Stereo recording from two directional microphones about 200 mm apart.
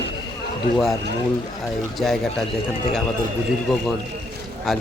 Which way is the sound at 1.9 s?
Centre (ahead or behind).